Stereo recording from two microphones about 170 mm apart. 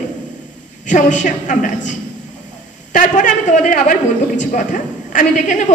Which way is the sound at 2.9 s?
50° left (ahead or behind).